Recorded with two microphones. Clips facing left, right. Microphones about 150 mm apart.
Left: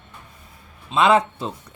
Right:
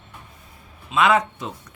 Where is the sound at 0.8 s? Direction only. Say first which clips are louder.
Left 2 dB; 25° left (ahead or behind).